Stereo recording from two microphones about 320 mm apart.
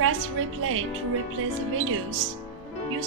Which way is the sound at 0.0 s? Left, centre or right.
Right.